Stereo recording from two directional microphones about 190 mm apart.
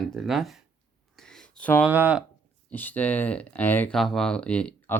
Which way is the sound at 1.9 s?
10° right (ahead or behind).